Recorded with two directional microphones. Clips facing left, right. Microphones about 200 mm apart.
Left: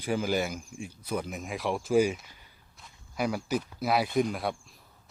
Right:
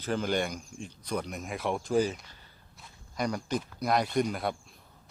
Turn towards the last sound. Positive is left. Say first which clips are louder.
# even
turn(degrees=0)  # may be behind; listen again after turning